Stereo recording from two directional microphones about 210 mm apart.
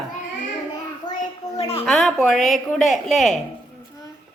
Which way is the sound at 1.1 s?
20° left (ahead or behind).